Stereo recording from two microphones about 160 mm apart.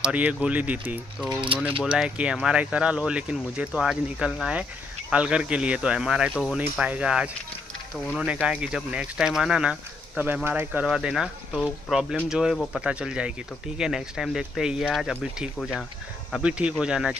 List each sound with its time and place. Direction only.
0.0 s speech: 10° right (ahead or behind)
1.3 s speech: 30° right (ahead or behind)
1.8 s speech: 5° right (ahead or behind)